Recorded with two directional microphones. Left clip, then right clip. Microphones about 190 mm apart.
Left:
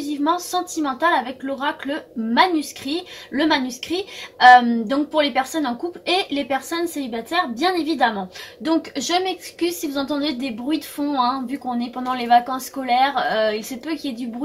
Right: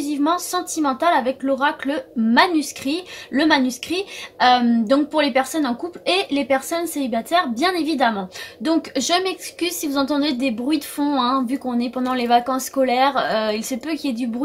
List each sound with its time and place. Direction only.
0.1 s a woman's voice: 40° right (ahead or behind)